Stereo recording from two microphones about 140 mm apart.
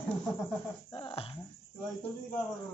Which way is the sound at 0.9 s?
40° left (ahead or behind).